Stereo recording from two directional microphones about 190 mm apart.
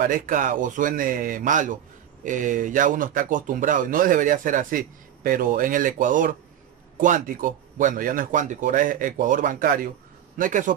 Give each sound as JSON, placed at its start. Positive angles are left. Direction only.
{"t": 0.0, "sound": "speech", "side_deg": -45}